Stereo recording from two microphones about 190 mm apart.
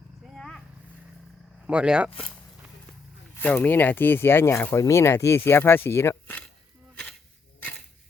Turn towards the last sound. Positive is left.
turn(degrees=10)  # may be behind; listen again after turning